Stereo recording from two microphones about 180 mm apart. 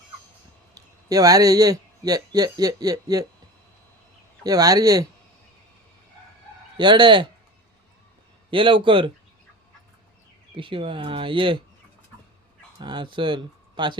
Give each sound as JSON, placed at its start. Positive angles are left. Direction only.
{"t": 0.7, "sound": "speech", "side_deg": -20}
{"t": 4.4, "sound": "speech", "side_deg": -20}
{"t": 6.7, "sound": "speech", "side_deg": -25}
{"t": 8.4, "sound": "speech", "side_deg": -30}
{"t": 10.5, "sound": "speech", "side_deg": -30}
{"t": 12.8, "sound": "speech", "side_deg": -25}